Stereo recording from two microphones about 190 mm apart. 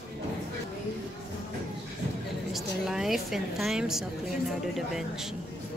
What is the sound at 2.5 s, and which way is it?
A woman's voice, centre (ahead or behind).